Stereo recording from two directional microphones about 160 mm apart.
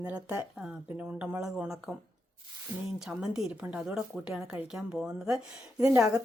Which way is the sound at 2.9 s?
5° right (ahead or behind).